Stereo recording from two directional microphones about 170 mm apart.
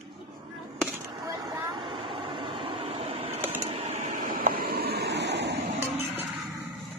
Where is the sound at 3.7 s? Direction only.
35° right (ahead or behind); by 5.5 s 90° right.